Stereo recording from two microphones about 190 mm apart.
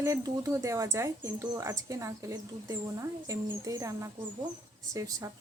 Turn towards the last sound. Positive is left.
turn(degrees=-15)  # may be behind; listen again after turning